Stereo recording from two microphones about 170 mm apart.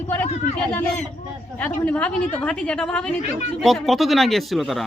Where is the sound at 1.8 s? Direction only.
10° left (ahead or behind).